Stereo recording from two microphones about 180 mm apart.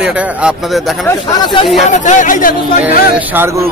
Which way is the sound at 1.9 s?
45° left (ahead or behind).